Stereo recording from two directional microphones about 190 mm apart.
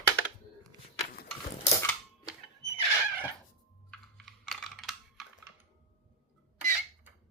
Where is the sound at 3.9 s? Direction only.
Centre (ahead or behind).